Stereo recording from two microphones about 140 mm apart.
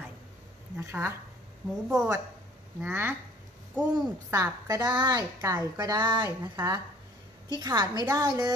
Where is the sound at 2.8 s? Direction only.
15° right (ahead or behind).